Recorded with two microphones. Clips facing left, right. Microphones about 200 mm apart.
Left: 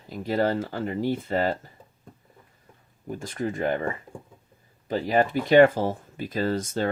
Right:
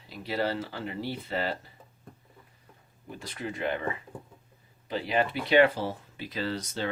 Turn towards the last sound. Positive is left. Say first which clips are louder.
# left 7 dB
turn(degrees=45)  # may be behind; listen again after turning